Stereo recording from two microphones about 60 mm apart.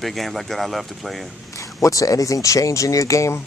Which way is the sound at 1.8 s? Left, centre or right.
Left.